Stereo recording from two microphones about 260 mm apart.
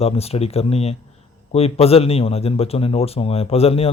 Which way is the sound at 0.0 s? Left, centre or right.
Left.